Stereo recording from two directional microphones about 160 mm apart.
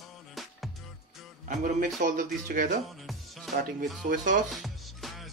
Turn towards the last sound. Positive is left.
turn(degrees=0)  # may be behind; listen again after turning